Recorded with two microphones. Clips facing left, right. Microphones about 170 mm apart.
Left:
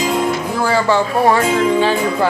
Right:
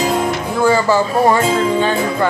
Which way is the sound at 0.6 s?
Centre (ahead or behind).